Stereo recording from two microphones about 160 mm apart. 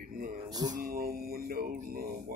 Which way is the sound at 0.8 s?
70° right (ahead or behind).